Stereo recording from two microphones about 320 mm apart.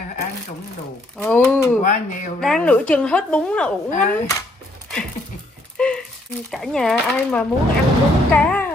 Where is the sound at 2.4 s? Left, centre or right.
Centre.